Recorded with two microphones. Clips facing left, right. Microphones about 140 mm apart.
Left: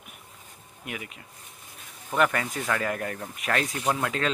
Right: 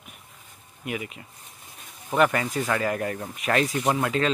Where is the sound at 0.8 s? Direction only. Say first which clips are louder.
Right 6 dB; 5° right (ahead or behind).